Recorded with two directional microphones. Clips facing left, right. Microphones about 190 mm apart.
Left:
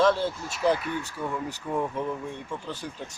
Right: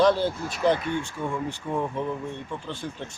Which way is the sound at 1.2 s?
20° right (ahead or behind).